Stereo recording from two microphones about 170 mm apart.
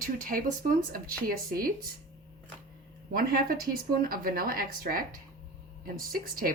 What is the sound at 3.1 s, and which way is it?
Speech, 60° right (ahead or behind).